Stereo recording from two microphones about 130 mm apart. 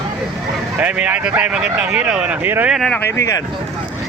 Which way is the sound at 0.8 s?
10° right (ahead or behind).